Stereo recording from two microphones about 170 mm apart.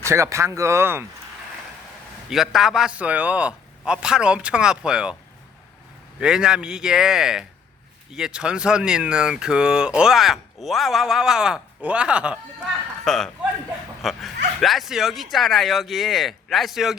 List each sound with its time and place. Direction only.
0.0 s speech: 15° right (ahead or behind)
2.3 s speech: centre (ahead or behind)
6.1 s speech: 5° right (ahead or behind)